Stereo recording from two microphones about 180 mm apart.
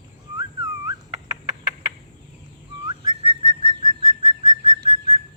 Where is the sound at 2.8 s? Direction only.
35° right (ahead or behind).